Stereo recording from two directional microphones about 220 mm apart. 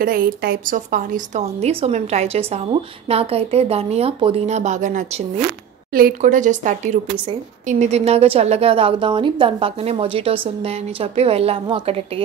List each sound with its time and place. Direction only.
0.0 s a woman's voice: 40° right (ahead or behind); by 12.0 s 25° right (ahead or behind)